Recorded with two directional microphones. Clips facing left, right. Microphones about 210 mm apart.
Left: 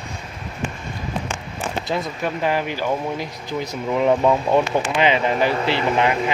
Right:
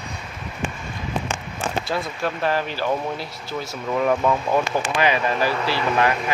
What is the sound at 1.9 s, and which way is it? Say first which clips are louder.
Speech: left 1 dB; 15° left (ahead or behind).